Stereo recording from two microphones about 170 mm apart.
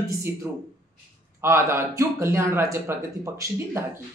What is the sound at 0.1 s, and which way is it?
Speech, 15° right (ahead or behind).